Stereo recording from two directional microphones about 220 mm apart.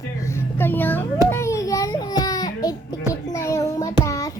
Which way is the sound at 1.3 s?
10° left (ahead or behind).